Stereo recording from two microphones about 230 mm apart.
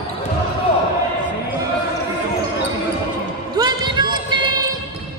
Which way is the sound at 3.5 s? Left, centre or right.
Centre.